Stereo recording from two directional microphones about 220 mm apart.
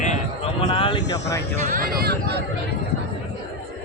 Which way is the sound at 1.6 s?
40° right (ahead or behind).